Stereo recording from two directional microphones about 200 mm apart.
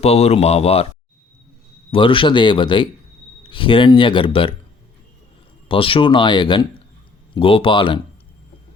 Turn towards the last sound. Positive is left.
turn(degrees=25)  # may be behind; listen again after turning